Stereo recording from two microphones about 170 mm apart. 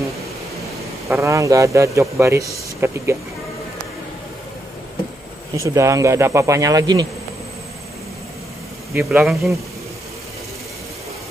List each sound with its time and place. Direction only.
1.0 s a man's voice: 15° right (ahead or behind)
5.6 s a man's voice: 20° right (ahead or behind)
8.9 s speech: centre (ahead or behind)